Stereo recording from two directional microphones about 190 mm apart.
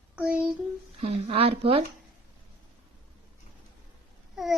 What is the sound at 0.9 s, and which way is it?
Speech, 30° right (ahead or behind).